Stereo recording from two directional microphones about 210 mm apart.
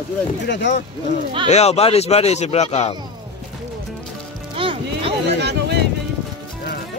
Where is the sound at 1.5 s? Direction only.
30° left (ahead or behind).